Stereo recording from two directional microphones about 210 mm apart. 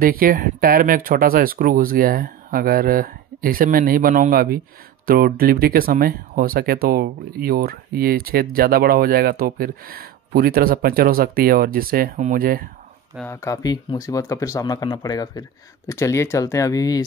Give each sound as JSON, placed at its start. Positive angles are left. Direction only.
{"t": 0.0, "sound": "speech", "side_deg": -45}
{"t": 13.1, "sound": "speech", "side_deg": 10}